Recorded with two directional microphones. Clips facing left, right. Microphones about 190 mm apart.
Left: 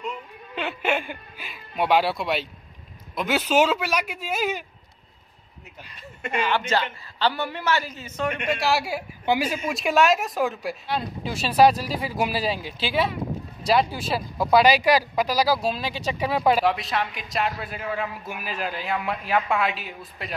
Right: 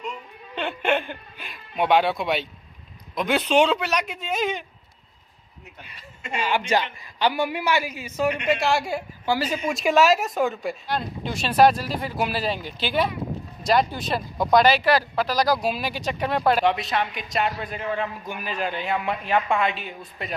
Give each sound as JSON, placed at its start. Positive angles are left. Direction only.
{"t": 0.6, "sound": "speech", "side_deg": 5}
{"t": 6.3, "sound": "a man's voice", "side_deg": -10}
{"t": 8.5, "sound": "speech", "side_deg": 0}
{"t": 9.2, "sound": "speech", "side_deg": 20}
{"t": 9.5, "sound": "speech", "side_deg": 0}